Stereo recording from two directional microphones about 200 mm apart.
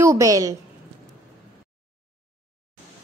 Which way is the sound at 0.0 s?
15° right (ahead or behind).